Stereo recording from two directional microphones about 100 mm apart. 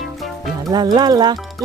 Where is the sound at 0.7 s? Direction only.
45° right (ahead or behind).